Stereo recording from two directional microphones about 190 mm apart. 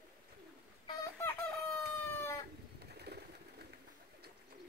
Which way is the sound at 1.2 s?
10° left (ahead or behind).